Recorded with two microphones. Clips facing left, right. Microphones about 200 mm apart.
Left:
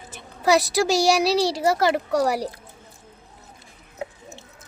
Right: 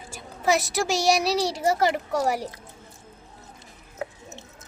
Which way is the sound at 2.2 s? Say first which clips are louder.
Left 3 dB; 35° left (ahead or behind).